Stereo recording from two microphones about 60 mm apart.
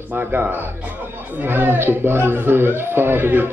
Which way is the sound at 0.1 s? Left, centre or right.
Right.